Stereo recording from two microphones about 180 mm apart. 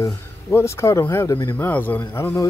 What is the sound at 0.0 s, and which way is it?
Speech, 15° left (ahead or behind).